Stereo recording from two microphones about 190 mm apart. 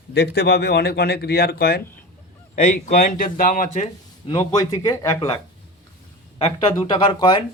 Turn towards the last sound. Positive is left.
turn(degrees=25)  # may be behind; listen again after turning